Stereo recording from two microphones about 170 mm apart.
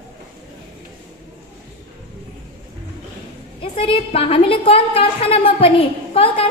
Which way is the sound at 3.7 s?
30° left (ahead or behind).